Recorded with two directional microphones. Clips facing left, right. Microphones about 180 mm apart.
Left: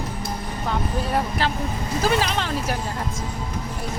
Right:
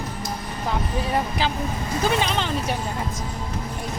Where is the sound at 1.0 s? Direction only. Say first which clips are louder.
Even; centre (ahead or behind).